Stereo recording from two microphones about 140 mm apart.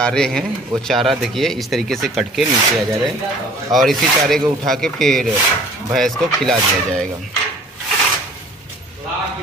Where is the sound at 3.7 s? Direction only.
Centre (ahead or behind).